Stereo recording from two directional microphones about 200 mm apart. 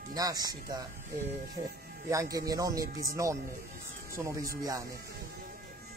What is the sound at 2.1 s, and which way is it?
Speech, 15° right (ahead or behind).